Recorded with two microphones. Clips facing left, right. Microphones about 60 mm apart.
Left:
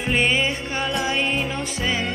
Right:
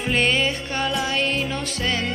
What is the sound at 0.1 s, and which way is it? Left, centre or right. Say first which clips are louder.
Music: even; centre.